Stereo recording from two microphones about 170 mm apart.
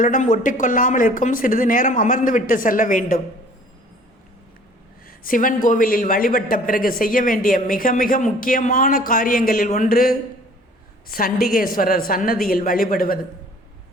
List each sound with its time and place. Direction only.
0.0 s speech: 50° left (ahead or behind)
5.0 s a man's voice: 55° left (ahead or behind)